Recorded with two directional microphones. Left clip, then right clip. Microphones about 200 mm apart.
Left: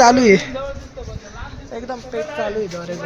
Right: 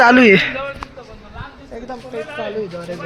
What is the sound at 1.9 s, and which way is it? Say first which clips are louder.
Speech: left 2 dB; centre (ahead or behind).